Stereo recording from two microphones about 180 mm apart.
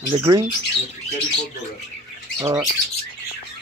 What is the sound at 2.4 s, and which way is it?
Squawk, 20° right (ahead or behind).